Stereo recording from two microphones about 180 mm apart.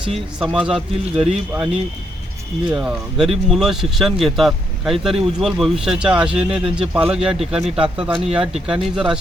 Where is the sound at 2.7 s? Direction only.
5° right (ahead or behind).